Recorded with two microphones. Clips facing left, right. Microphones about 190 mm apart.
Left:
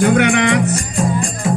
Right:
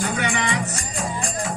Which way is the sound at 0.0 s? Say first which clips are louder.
Left 11 dB; 75° left (ahead or behind).